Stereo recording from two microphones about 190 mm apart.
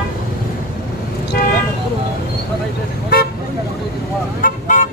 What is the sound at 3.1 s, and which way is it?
Vehicle, 55° left (ahead or behind).